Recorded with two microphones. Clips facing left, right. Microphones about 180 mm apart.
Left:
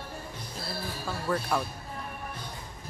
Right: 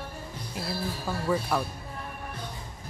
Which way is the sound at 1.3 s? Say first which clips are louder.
Right 2 dB; 5° right (ahead or behind).